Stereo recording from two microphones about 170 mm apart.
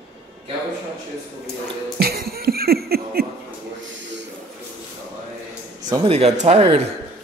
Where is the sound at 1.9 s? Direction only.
65° right (ahead or behind).